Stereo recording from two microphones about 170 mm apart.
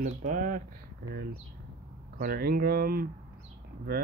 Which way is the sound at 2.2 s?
65° right (ahead or behind).